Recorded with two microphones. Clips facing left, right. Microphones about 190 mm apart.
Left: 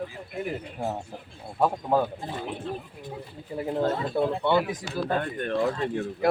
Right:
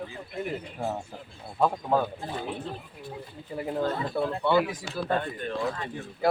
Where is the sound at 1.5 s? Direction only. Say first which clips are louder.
Left 1 dB; 10° left (ahead or behind).